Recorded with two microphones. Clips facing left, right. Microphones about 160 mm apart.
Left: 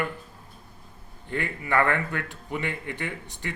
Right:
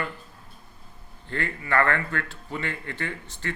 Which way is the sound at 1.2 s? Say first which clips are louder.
Left 1 dB; 15° left (ahead or behind).